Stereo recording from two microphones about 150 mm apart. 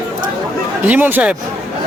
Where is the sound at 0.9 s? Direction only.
15° right (ahead or behind).